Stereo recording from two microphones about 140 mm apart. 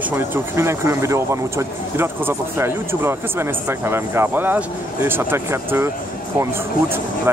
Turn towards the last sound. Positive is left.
turn(degrees=-15)  # may be behind; listen again after turning